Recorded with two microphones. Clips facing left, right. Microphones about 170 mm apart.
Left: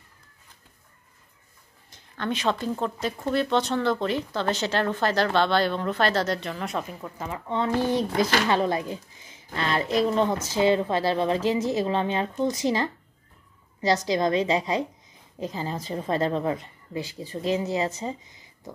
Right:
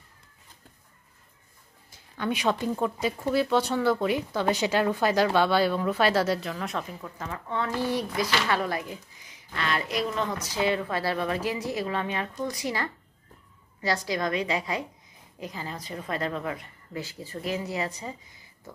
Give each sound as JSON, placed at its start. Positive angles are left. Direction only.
{"t": 1.9, "sound": "speech", "side_deg": -10}
{"t": 7.0, "sound": "a woman's voice", "side_deg": 15}